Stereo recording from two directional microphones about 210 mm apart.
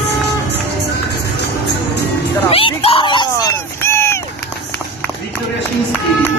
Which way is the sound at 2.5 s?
25° left (ahead or behind).